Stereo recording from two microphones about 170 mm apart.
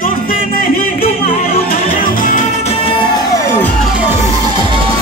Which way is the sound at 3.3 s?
15° left (ahead or behind).